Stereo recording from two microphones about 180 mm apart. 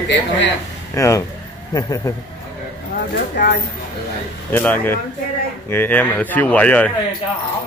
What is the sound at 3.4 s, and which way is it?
Speech, 70° left (ahead or behind).